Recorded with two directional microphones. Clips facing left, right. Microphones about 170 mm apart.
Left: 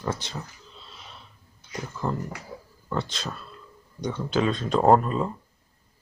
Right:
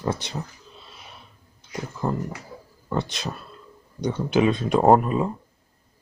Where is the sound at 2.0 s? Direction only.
10° right (ahead or behind).